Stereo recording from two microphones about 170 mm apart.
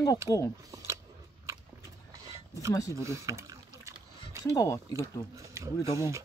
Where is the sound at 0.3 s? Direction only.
15° left (ahead or behind).